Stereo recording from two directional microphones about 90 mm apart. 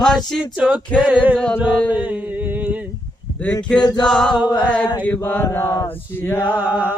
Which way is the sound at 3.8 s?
55° left (ahead or behind).